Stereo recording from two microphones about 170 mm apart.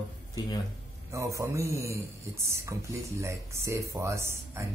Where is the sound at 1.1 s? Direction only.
15° right (ahead or behind).